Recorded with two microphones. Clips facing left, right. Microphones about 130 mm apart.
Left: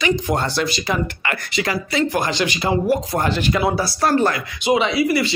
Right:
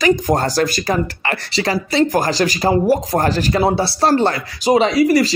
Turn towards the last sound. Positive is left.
turn(degrees=-40)  # may be behind; listen again after turning